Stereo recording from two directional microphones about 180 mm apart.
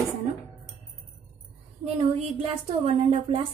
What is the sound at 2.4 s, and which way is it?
A woman's voice, 35° right (ahead or behind).